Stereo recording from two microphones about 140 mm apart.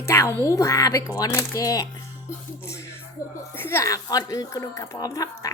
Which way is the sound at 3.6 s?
15° left (ahead or behind).